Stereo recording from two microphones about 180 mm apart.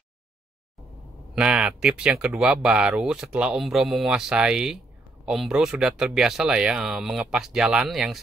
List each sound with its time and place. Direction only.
1.3 s speech: 5° right (ahead or behind)